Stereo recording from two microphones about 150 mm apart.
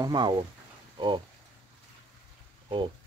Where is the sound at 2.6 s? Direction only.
35° right (ahead or behind).